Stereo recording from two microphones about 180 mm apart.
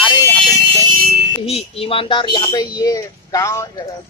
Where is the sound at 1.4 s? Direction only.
35° left (ahead or behind).